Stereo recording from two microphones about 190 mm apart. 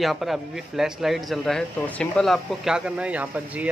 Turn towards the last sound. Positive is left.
turn(degrees=-5)  # may be behind; listen again after turning